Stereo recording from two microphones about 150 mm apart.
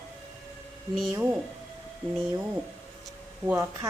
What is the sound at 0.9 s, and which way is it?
Speech, 5° right (ahead or behind).